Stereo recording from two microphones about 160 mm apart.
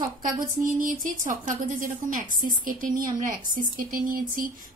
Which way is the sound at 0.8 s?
55° right (ahead or behind).